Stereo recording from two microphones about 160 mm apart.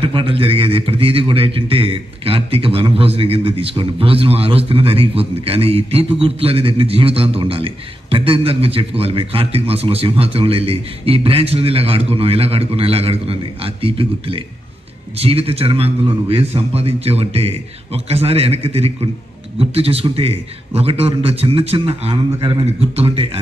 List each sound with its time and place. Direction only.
0.0 s a man's voice: 35° right (ahead or behind)